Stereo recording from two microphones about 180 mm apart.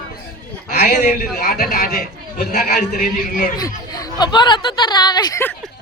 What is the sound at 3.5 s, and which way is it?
Speech, 20° left (ahead or behind).